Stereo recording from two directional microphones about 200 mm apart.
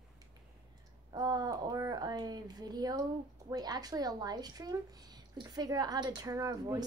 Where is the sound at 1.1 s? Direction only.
20° right (ahead or behind).